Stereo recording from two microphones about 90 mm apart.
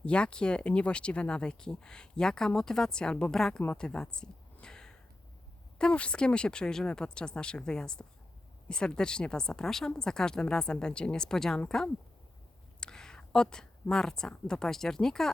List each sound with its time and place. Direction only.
0.0 s speech: 10° left (ahead or behind)
3.8 s a sound: 10° left (ahead or behind)
5.8 s speech: 15° left (ahead or behind)
12.8 s a woman's voice: 10° left (ahead or behind)